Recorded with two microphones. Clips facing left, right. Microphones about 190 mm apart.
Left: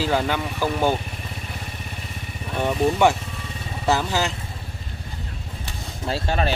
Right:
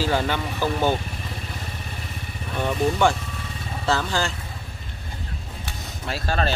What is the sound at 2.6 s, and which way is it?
Speech, 15° left (ahead or behind).